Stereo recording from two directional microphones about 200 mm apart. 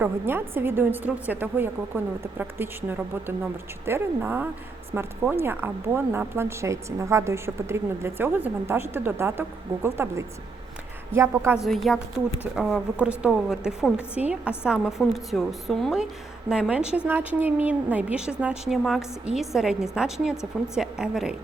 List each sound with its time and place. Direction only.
0.0 s speech: 10° right (ahead or behind)
11.6 s a woman's voice: centre (ahead or behind)